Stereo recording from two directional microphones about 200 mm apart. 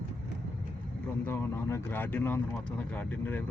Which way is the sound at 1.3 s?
10° left (ahead or behind).